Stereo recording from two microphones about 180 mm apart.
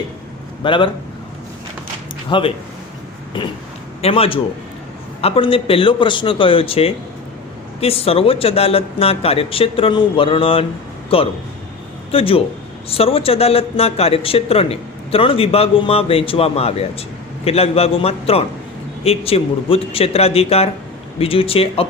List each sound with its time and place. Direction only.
0.6 s speech: 25° left (ahead or behind)
2.3 s speech: 25° left (ahead or behind)